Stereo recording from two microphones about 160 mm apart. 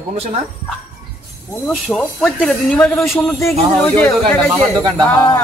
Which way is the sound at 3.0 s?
15° left (ahead or behind).